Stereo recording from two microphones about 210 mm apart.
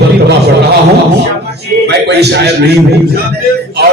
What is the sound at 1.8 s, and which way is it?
A man's voice, 50° right (ahead or behind).